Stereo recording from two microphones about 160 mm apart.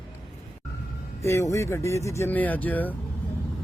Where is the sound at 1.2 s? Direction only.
15° left (ahead or behind).